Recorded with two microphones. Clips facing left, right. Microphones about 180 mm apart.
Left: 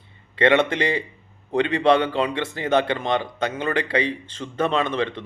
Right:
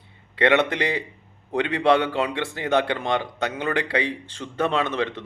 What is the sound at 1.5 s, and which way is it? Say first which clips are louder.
A man's voice: left 2 dB; 10° right (ahead or behind).